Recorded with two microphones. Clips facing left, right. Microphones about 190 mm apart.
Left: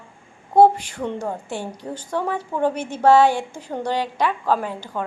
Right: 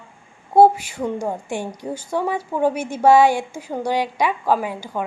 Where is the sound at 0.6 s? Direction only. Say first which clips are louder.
Right 1 dB; 10° right (ahead or behind).